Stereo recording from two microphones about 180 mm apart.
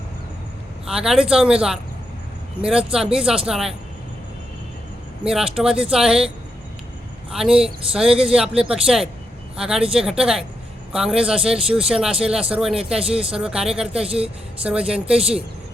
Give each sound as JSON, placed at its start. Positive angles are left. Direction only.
{"t": 0.9, "sound": "speech", "side_deg": -5}
{"t": 5.2, "sound": "speech", "side_deg": -5}
{"t": 13.0, "sound": "speech", "side_deg": -35}
{"t": 13.3, "sound": "speech", "side_deg": -5}
{"t": 14.0, "sound": "speech", "side_deg": -35}
{"t": 14.6, "sound": "speech", "side_deg": -5}